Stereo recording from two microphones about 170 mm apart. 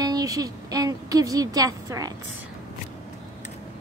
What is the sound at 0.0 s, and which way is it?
Speech, 20° right (ahead or behind).